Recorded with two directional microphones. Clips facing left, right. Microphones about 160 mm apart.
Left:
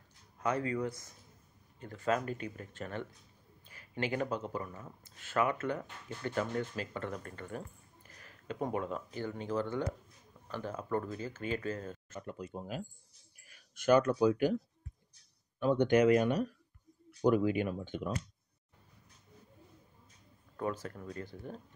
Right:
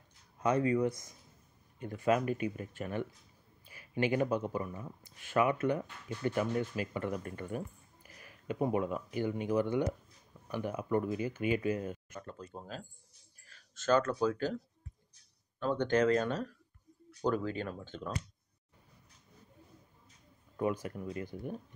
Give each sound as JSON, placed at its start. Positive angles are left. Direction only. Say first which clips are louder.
{"t": 0.4, "sound": "speech", "louder": "right 4 dB", "side_deg": -20}
{"t": 12.2, "sound": "speech", "louder": "left 3 dB", "side_deg": 15}
{"t": 15.6, "sound": "speech", "louder": "left 3 dB", "side_deg": 15}
{"t": 20.5, "sound": "speech", "louder": "right 3 dB", "side_deg": -15}